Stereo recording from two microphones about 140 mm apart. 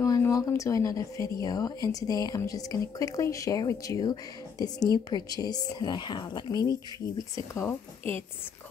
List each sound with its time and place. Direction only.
0.0 s speech: 20° left (ahead or behind)